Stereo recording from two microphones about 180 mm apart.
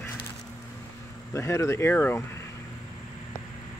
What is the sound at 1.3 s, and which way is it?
Speech, 15° left (ahead or behind).